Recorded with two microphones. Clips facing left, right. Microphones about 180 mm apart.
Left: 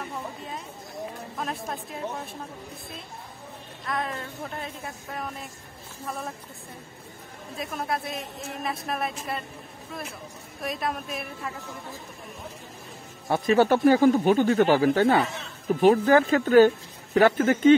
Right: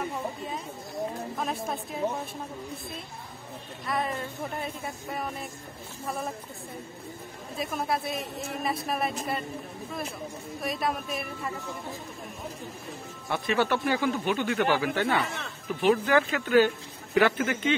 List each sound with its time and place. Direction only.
1.4 s a woman's voice: centre (ahead or behind)
3.8 s a woman's voice: 5° right (ahead or behind)
7.5 s a woman's voice: centre (ahead or behind)
10.6 s a woman's voice: centre (ahead or behind)
13.3 s speech: 40° left (ahead or behind)